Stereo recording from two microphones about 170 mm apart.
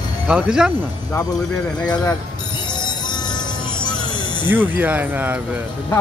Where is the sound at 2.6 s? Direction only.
25° left (ahead or behind).